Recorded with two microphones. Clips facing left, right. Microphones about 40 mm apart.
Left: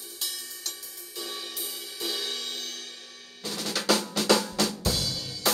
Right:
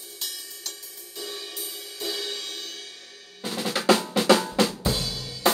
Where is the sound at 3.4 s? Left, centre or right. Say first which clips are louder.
Right 6 dB; right.